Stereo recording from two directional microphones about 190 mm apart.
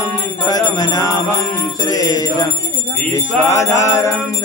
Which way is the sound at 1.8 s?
20° left (ahead or behind).